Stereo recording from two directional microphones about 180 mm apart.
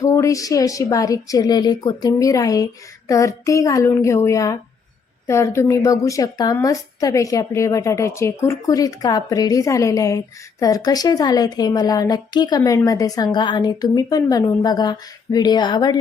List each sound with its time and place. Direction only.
0.0 s a woman's voice: 20° left (ahead or behind)